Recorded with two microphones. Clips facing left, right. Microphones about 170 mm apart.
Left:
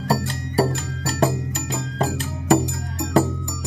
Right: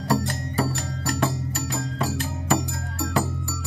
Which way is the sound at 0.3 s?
30° left (ahead or behind).